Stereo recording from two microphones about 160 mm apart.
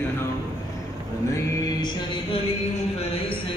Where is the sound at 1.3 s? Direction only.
20° left (ahead or behind).